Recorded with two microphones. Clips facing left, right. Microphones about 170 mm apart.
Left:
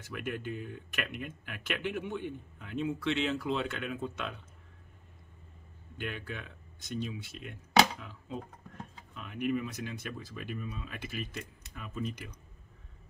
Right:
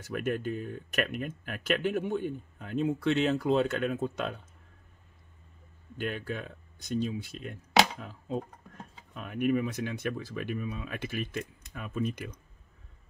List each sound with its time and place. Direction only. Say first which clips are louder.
0.0 s speech: right 6 dB; 45° right (ahead or behind)
5.9 s speech: right 5 dB; 40° right (ahead or behind); by 12.4 s 55° right (ahead or behind)